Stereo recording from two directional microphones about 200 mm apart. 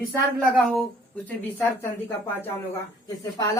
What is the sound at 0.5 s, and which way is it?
A man's voice, centre (ahead or behind).